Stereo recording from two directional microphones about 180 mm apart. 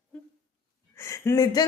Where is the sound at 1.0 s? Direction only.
15° left (ahead or behind).